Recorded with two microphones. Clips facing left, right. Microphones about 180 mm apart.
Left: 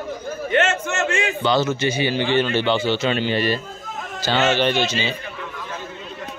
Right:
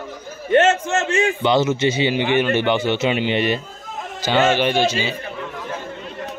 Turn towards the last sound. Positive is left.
turn(degrees=-10)  # may be behind; listen again after turning